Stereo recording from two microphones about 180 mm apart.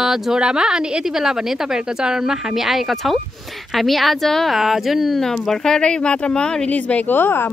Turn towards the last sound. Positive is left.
turn(degrees=10)  # may be behind; listen again after turning